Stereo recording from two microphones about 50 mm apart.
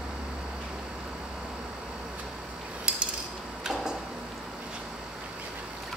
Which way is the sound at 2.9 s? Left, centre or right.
Right.